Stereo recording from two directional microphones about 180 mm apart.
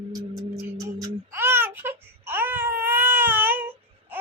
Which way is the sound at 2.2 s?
10° right (ahead or behind).